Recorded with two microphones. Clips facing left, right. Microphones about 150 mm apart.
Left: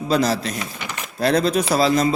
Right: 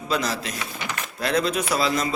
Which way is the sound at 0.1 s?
35° left (ahead or behind).